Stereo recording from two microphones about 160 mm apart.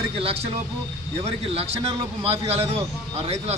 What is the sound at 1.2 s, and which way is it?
Speech, 40° right (ahead or behind).